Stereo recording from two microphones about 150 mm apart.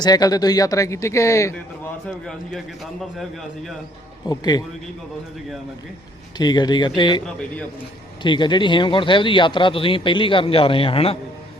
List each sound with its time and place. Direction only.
0.0 s speech: 25° left (ahead or behind)
1.5 s a man's voice: 5° left (ahead or behind)
4.3 s speech: 25° left (ahead or behind)
6.3 s speech: 30° left (ahead or behind)
7.3 s a man's voice: 5° left (ahead or behind)
8.2 s speech: 30° left (ahead or behind)